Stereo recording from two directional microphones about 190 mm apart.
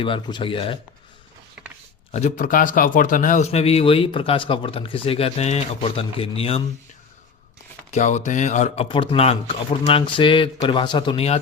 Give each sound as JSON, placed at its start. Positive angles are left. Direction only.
{"t": 0.0, "sound": "speech", "side_deg": 25}
{"t": 2.1, "sound": "a man's voice", "side_deg": 40}
{"t": 7.9, "sound": "a man's voice", "side_deg": 40}